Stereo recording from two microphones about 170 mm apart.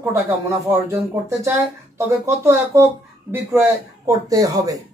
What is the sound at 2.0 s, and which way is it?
Speech, 15° right (ahead or behind).